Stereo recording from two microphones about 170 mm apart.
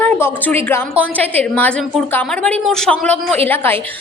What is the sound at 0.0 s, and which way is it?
A woman's voice, 10° left (ahead or behind).